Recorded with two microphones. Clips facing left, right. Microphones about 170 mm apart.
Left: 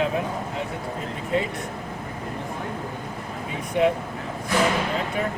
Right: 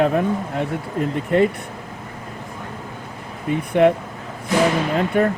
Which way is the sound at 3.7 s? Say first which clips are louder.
Right 6 dB; 55° right (ahead or behind).